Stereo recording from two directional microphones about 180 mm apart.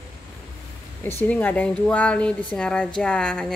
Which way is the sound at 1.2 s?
10° left (ahead or behind).